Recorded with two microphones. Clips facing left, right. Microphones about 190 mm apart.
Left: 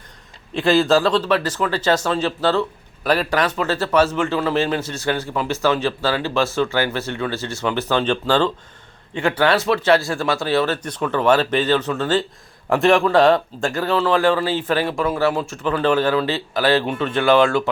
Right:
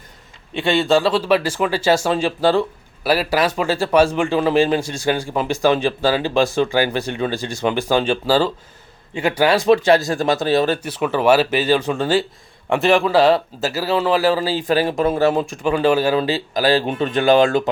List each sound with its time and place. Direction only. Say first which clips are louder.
0.5 s speech: left 1 dB; centre (ahead or behind)
12.6 s speech: even; centre (ahead or behind)
14.9 s speech: right 3 dB; 25° right (ahead or behind)
16.6 s speech: right 1 dB; 35° right (ahead or behind)
16.8 s speech: right 2 dB; 20° right (ahead or behind)